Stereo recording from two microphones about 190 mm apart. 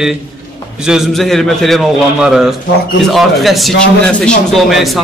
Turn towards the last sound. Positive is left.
turn(degrees=0)  # may be behind; listen again after turning